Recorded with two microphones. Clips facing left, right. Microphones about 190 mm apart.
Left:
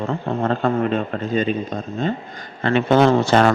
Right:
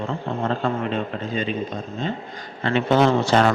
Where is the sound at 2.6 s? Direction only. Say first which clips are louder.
Left 3 dB; 55° left (ahead or behind).